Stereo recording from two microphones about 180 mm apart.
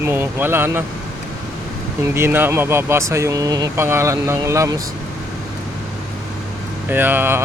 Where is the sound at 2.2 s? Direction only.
10° right (ahead or behind).